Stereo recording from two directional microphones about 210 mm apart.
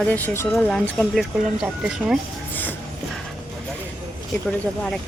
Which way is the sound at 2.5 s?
10° left (ahead or behind).